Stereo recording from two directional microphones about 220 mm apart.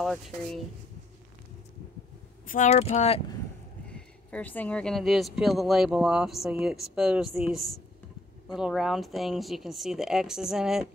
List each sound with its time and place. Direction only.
0.0 s speech: centre (ahead or behind)
2.4 s speech: 35° left (ahead or behind)
3.8 s speech: 5° left (ahead or behind)